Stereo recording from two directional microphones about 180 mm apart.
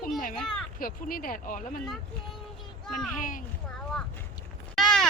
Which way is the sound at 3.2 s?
45° left (ahead or behind).